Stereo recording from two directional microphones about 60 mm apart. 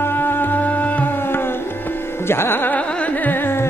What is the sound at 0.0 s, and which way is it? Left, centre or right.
Music, left.